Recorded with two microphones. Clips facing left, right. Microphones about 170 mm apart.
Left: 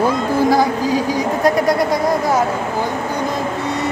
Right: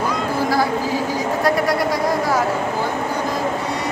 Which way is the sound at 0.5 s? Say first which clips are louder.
Left 3 dB; 15° left (ahead or behind).